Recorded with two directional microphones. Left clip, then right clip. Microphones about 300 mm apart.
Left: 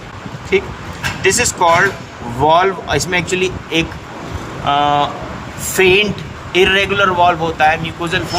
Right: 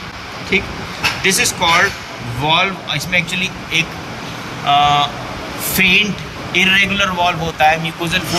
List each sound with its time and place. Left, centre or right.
0.5 s speech: centre